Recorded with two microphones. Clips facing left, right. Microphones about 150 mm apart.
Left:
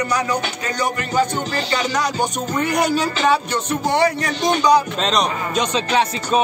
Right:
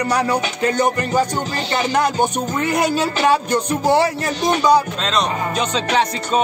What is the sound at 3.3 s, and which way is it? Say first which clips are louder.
Music: right 2 dB; 40° right (ahead or behind).